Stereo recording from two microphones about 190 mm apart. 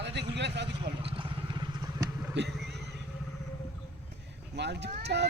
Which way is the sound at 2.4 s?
65° right (ahead or behind).